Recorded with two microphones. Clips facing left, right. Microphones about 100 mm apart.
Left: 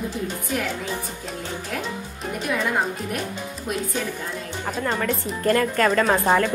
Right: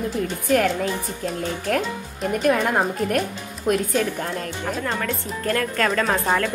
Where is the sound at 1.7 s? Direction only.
60° right (ahead or behind).